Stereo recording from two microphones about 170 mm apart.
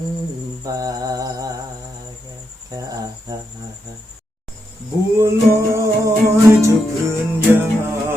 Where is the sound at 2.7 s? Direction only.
20° right (ahead or behind).